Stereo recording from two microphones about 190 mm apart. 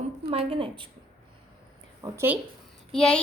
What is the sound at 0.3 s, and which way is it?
Speech, 30° right (ahead or behind).